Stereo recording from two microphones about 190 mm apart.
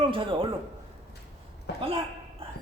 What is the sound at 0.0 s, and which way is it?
Speech, 25° right (ahead or behind).